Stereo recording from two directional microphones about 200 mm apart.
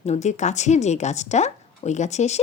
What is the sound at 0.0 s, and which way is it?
Speech, 35° left (ahead or behind).